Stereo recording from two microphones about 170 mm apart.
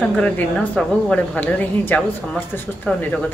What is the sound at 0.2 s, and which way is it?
Speech, 5° left (ahead or behind).